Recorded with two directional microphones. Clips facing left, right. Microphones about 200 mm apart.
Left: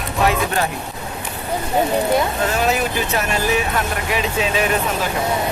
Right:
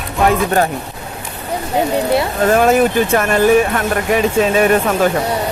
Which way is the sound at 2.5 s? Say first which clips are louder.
Right 8 dB; 50° right (ahead or behind).